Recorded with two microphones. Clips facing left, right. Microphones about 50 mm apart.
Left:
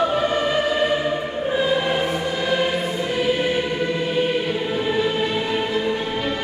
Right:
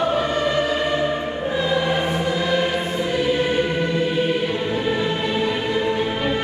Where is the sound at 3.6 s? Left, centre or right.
Centre.